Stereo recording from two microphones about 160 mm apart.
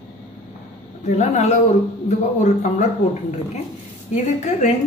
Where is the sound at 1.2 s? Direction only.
45° left (ahead or behind).